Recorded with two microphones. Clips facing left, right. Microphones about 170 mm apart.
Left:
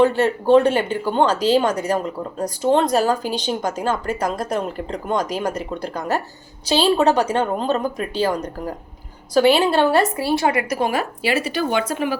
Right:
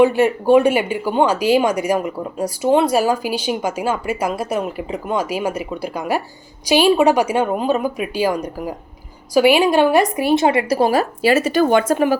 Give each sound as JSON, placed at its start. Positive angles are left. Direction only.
{"t": 0.0, "sound": "a woman's voice", "side_deg": -10}